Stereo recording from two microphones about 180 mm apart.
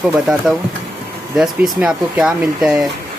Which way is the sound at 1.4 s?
5° right (ahead or behind).